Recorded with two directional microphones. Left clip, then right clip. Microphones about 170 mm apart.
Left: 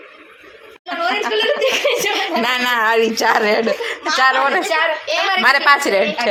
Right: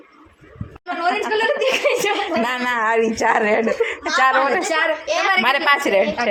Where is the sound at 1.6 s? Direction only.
60° right (ahead or behind).